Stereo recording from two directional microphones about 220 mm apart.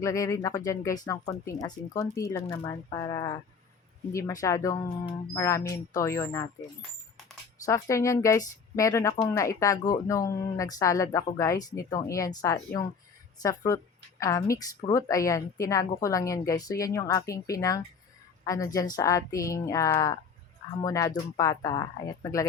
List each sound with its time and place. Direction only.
0.0 s speech: 15° left (ahead or behind)
7.6 s speech: 15° left (ahead or behind)